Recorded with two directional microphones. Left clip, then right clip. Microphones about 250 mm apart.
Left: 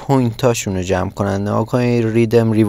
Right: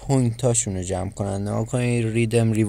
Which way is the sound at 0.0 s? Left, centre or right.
Centre.